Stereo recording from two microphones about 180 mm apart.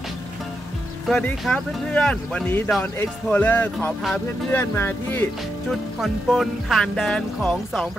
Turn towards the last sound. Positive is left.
turn(degrees=0)  # may be behind; listen again after turning